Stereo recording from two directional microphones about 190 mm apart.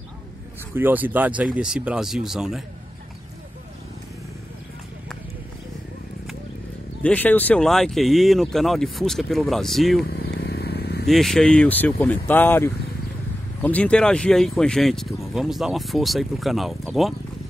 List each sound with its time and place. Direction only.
0.7 s speech: 10° right (ahead or behind)
7.0 s speech: 10° left (ahead or behind)
10.0 s vehicle: 55° left (ahead or behind)
11.1 s speech: centre (ahead or behind)